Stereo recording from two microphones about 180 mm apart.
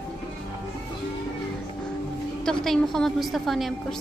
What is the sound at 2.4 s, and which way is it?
A woman's voice, centre (ahead or behind).